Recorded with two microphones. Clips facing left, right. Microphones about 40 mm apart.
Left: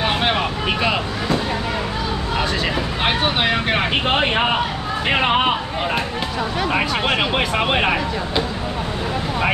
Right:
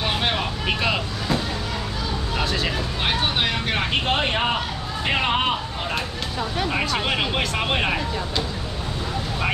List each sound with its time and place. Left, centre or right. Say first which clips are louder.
0.0 s vehicle: left 4 dB; left
3.0 s speech: left 3 dB; left
6.7 s speech: left 5 dB; centre